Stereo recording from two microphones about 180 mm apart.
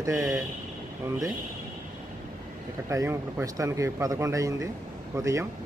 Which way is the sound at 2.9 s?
15° right (ahead or behind).